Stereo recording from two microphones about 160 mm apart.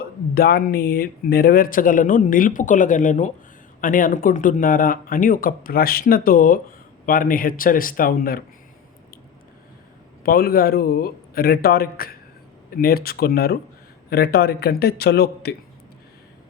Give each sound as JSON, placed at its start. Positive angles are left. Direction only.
{"t": 0.0, "sound": "speech", "side_deg": 75}
{"t": 10.2, "sound": "a man's voice", "side_deg": 70}